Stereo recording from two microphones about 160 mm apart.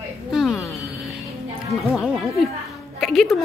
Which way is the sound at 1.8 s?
Centre (ahead or behind).